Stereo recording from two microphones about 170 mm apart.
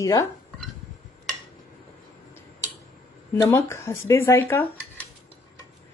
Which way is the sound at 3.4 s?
15° left (ahead or behind).